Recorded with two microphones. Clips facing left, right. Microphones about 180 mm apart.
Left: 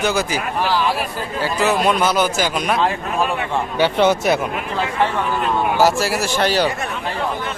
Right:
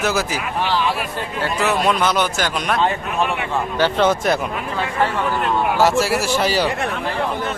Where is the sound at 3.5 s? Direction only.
10° left (ahead or behind).